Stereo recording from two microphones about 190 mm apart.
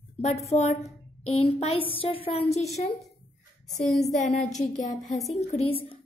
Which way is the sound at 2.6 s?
Centre (ahead or behind).